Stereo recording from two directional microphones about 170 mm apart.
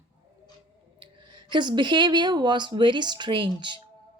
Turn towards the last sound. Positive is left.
turn(degrees=-30)  # may be behind; listen again after turning